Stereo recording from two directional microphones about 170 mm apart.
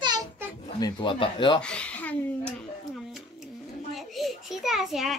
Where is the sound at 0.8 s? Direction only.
25° left (ahead or behind).